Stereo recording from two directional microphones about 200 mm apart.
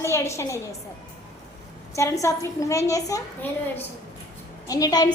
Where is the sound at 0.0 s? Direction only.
15° left (ahead or behind).